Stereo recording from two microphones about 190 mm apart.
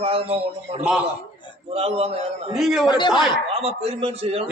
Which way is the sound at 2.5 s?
Centre (ahead or behind).